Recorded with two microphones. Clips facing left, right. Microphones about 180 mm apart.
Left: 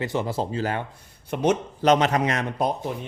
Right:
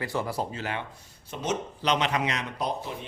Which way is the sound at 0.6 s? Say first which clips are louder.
Left 6 dB; 45° left (ahead or behind).